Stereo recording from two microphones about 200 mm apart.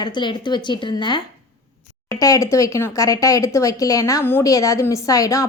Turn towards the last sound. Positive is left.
turn(degrees=15)  # may be behind; listen again after turning